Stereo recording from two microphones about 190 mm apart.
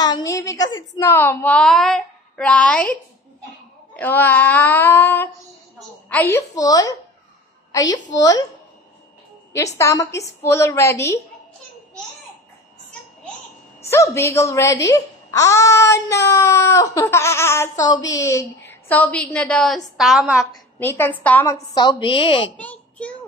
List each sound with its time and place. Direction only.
0.0 s a woman's voice: 20° left (ahead or behind)
7.9 s a woman's voice: 20° left (ahead or behind)
9.8 s a woman's voice: 15° left (ahead or behind)
13.8 s a woman's voice: 15° left (ahead or behind); by 20.4 s 5° right (ahead or behind)
20.5 s a woman's voice: 15° left (ahead or behind)
21.7 s a woman's voice: 25° left (ahead or behind)
22.6 s a sound: 5° left (ahead or behind)